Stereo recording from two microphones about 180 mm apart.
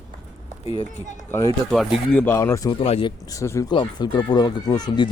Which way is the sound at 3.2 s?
15° left (ahead or behind).